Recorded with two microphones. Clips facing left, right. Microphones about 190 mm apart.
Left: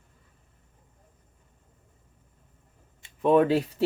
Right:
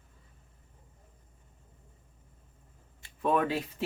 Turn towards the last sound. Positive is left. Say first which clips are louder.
# left 8 dB
turn(degrees=30)  # may be behind; listen again after turning